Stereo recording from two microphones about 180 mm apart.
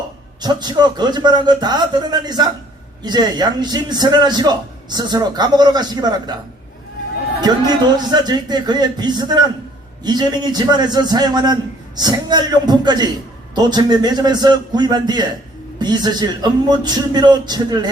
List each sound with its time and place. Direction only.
0.4 s a man's voice: 25° right (ahead or behind)
7.4 s a man's voice: 25° right (ahead or behind)